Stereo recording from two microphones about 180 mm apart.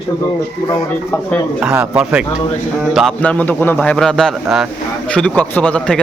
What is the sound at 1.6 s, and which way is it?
Speech, 5° right (ahead or behind).